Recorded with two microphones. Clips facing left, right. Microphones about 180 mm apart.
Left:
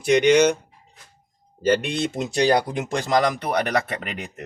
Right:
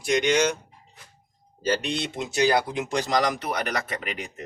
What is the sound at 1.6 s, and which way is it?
Speech, 55° left (ahead or behind).